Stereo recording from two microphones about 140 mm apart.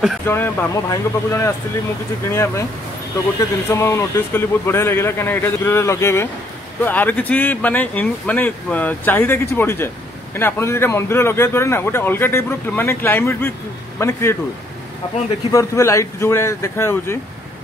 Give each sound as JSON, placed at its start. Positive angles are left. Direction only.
{"t": 0.3, "sound": "speech", "side_deg": 15}
{"t": 15.5, "sound": "speech", "side_deg": 20}